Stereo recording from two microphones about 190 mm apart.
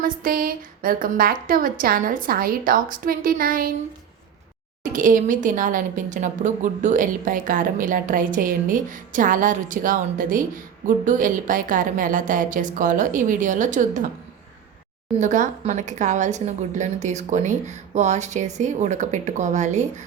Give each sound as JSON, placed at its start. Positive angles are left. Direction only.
{"t": 0.0, "sound": "speech", "side_deg": -50}
{"t": 4.8, "sound": "speech", "side_deg": -45}
{"t": 15.2, "sound": "a woman's voice", "side_deg": -40}